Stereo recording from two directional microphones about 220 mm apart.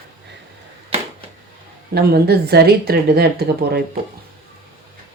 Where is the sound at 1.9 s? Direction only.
45° right (ahead or behind).